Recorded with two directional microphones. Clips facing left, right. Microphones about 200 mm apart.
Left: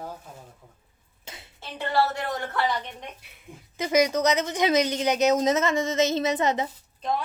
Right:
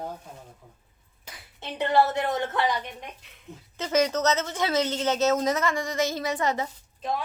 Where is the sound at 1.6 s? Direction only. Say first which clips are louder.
Right 3 dB; 20° right (ahead or behind).